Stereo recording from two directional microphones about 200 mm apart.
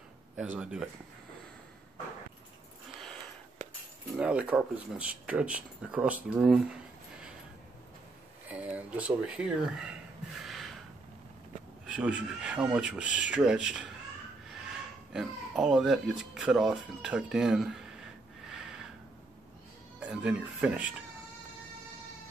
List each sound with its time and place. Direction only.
0.4 s speech: 5° right (ahead or behind)
3.6 s keys jangling: 40° right (ahead or behind)
4.2 s speech: 5° right (ahead or behind)
8.5 s speech: 5° right (ahead or behind)
10.4 s snort: centre (ahead or behind)
11.8 s speech: 5° right (ahead or behind)
15.1 s speech: centre (ahead or behind)
18.5 s a sound: 5° right (ahead or behind)
20.0 s speech: 5° right (ahead or behind)